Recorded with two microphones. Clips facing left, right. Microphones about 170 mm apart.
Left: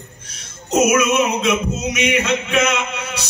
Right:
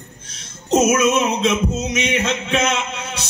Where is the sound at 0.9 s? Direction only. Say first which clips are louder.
Even; 30° right (ahead or behind).